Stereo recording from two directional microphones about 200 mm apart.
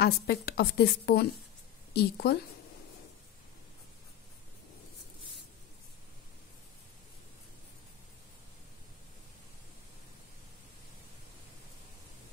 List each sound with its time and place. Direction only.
0.0 s a woman's voice: 55° left (ahead or behind)